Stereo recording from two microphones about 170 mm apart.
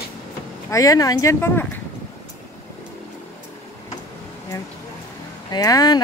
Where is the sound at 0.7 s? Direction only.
20° left (ahead or behind).